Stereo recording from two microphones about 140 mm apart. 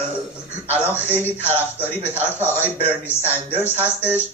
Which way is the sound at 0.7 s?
15° left (ahead or behind).